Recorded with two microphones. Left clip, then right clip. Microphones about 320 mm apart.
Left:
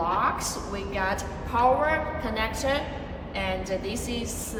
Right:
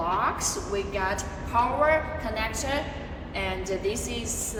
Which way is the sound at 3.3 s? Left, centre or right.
Centre.